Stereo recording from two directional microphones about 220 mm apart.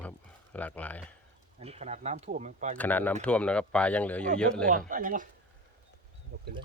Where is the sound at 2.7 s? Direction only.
5° left (ahead or behind).